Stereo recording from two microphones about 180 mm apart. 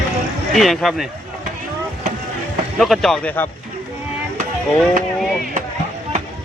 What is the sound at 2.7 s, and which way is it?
Speech, centre (ahead or behind).